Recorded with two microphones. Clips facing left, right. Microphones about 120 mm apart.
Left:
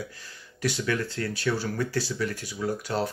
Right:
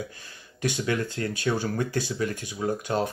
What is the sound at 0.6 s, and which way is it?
Speech, 20° right (ahead or behind).